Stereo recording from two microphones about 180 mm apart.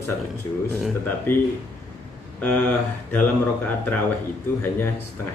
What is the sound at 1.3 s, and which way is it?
Speech, 10° left (ahead or behind).